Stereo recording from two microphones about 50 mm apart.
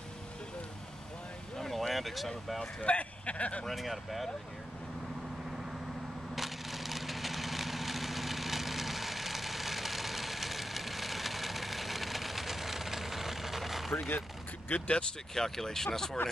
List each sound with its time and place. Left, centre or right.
1.6 s a sound: centre
2.8 s speech: left
3.6 s speech: centre
6.3 s a sound: centre
13.9 s speech: left
14.7 s speech: left
15.3 s speech: centre